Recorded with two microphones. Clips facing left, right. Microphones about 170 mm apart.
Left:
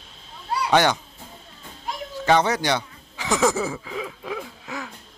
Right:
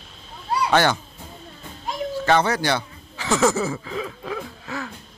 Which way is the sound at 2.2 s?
15° left (ahead or behind).